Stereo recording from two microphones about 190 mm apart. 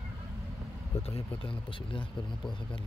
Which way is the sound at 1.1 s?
25° left (ahead or behind).